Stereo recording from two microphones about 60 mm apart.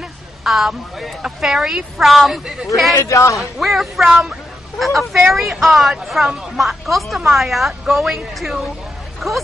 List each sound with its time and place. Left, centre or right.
0.4 s speech: centre
2.9 s a man's voice: left
3.3 s speech: centre